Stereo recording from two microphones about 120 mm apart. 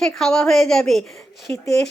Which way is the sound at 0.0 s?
5° left (ahead or behind).